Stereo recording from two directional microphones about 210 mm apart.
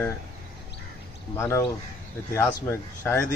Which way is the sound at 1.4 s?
10° left (ahead or behind).